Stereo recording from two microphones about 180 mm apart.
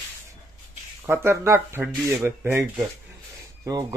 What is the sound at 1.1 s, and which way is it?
Speech, 15° right (ahead or behind).